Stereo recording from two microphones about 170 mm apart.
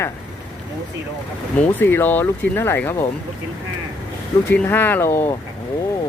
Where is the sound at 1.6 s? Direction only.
10° left (ahead or behind).